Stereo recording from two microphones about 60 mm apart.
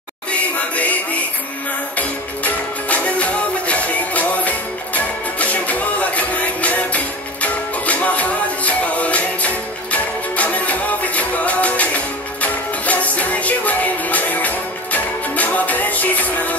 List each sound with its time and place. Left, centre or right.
0.3 s music: left